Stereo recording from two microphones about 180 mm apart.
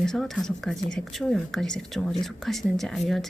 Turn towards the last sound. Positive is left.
turn(degrees=0)  # may be behind; listen again after turning